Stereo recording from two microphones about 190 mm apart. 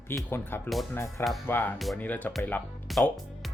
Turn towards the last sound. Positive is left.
turn(degrees=0)  # may be behind; listen again after turning